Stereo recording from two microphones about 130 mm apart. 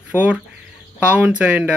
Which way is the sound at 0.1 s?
10° right (ahead or behind).